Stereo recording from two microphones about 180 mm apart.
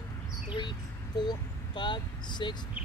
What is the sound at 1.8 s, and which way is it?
Speech, 25° left (ahead or behind).